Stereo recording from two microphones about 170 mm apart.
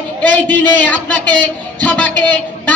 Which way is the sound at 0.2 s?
10° left (ahead or behind).